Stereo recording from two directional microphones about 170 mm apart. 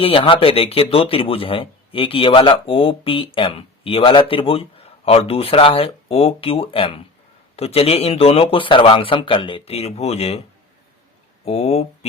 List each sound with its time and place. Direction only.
0.0 s speech: 30° left (ahead or behind)
11.4 s speech: 35° left (ahead or behind)